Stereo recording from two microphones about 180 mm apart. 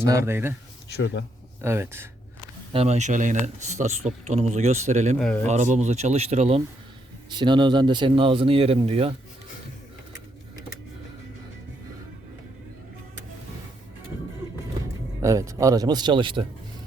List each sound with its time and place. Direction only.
0.1 s speech: 15° right (ahead or behind)
0.9 s speech: 70° left (ahead or behind)
1.6 s speech: 15° right (ahead or behind)
2.7 s speech: 35° right (ahead or behind)
5.2 s speech: 5° left (ahead or behind)
5.5 s speech: 40° right (ahead or behind)
7.3 s speech: 25° right (ahead or behind)
15.2 s speech: 15° right (ahead or behind)